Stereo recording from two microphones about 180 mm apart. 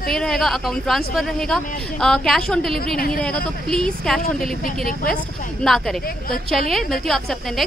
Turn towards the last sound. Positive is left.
turn(degrees=0)  # may be behind; listen again after turning